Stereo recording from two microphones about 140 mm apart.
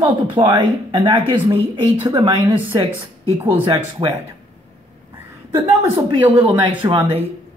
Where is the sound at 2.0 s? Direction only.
25° right (ahead or behind).